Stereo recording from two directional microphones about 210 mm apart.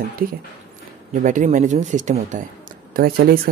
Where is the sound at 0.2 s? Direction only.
40° right (ahead or behind).